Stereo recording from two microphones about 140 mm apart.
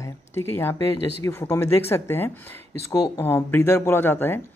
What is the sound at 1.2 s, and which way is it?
Speech, 20° left (ahead or behind).